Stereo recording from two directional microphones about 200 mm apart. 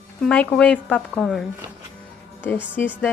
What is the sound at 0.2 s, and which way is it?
Speech, 5° left (ahead or behind).